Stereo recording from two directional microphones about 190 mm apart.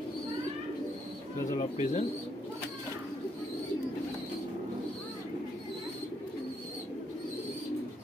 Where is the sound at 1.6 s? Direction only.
35° left (ahead or behind).